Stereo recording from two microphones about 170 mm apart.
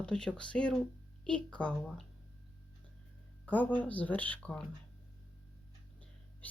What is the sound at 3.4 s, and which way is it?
Speech, 10° left (ahead or behind).